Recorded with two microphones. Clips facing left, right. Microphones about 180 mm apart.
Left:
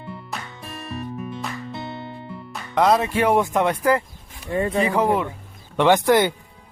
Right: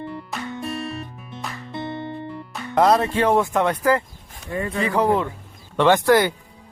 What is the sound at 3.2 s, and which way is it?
Speech, 15° left (ahead or behind).